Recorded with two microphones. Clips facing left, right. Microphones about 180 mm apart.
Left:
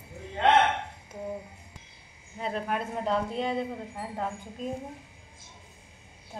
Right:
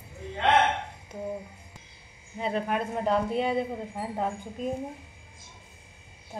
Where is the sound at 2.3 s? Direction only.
Centre (ahead or behind).